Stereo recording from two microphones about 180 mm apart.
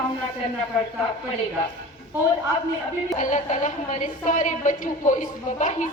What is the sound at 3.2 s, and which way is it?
A woman's voice, 45° left (ahead or behind).